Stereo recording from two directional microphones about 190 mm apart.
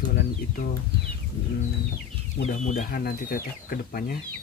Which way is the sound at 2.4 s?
40° left (ahead or behind).